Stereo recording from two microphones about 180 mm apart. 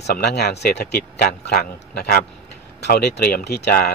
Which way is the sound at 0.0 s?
65° left (ahead or behind).